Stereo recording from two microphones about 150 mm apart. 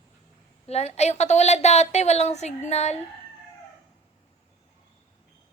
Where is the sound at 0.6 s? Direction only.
45° left (ahead or behind).